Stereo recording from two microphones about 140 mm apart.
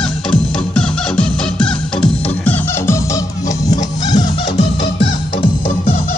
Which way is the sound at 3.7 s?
60° left (ahead or behind).